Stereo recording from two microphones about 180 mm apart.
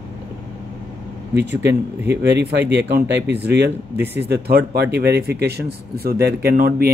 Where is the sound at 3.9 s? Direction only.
10° right (ahead or behind).